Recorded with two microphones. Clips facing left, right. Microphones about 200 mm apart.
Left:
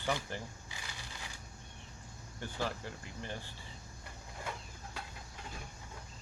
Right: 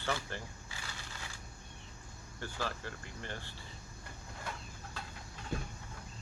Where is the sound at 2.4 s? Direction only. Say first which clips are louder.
Left 1 dB; 15° left (ahead or behind).